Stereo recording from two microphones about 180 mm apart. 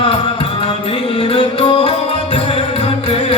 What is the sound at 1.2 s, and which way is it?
Music, 30° left (ahead or behind).